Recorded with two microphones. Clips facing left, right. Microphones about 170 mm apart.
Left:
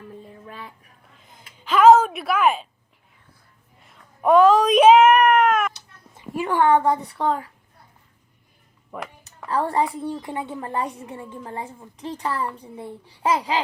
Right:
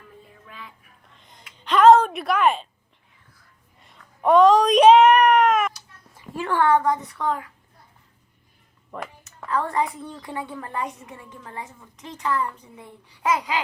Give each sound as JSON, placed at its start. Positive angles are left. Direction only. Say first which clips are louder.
{"t": 0.3, "sound": "music", "louder": "left 5 dB", "side_deg": 40}
{"t": 1.1, "sound": "a sound", "louder": "left 1 dB", "side_deg": 5}
{"t": 3.8, "sound": "a sound", "louder": "left 1 dB", "side_deg": 0}
{"t": 5.7, "sound": "a woman's voice", "louder": "left 1 dB", "side_deg": 20}
{"t": 8.9, "sound": "a woman's voice", "louder": "even", "side_deg": 10}
{"t": 9.5, "sound": "a woman's voice", "louder": "left 2 dB", "side_deg": 30}